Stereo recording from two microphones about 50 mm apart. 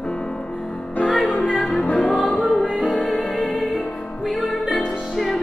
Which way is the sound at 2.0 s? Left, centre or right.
Left.